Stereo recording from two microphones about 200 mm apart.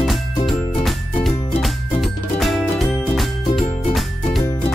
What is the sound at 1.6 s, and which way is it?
Music, centre (ahead or behind).